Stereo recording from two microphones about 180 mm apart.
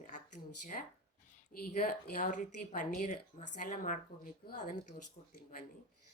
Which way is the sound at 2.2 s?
45° left (ahead or behind).